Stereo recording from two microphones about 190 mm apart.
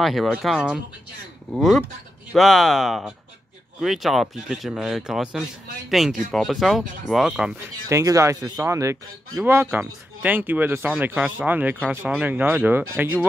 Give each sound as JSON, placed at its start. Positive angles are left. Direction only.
{"t": 0.0, "sound": "speech", "side_deg": 0}
{"t": 7.9, "sound": "speech", "side_deg": -15}